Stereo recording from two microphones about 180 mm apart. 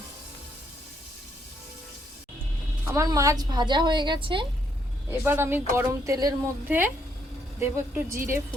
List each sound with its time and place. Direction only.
2.8 s a woman's voice: 20° right (ahead or behind)
5.2 s speech: 10° right (ahead or behind)